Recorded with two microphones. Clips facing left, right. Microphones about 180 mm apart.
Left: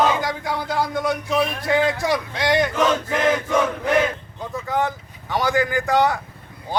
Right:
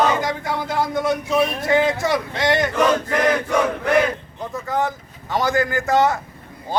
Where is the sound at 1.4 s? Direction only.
25° right (ahead or behind).